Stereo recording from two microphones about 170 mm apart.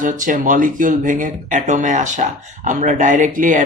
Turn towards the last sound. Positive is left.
turn(degrees=-50)  # may be behind; listen again after turning